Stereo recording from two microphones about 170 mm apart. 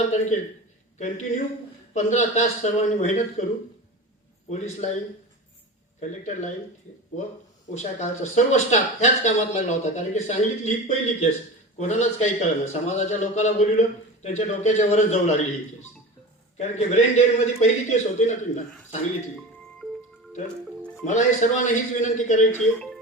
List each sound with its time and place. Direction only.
0.0 s a man's voice: 45° left (ahead or behind)
4.4 s speech: 40° left (ahead or behind)
6.0 s speech: 45° left (ahead or behind)
7.7 s speech: 45° left (ahead or behind)
16.6 s speech: 40° left (ahead or behind)
21.0 s speech: 45° left (ahead or behind)